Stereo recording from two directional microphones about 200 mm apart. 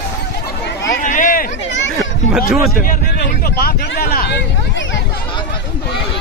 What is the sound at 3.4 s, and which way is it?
Speech, 50° left (ahead or behind).